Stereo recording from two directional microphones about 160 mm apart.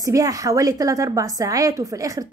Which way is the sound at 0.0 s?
20° right (ahead or behind).